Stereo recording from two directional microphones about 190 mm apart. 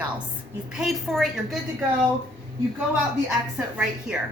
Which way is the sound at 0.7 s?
Centre (ahead or behind).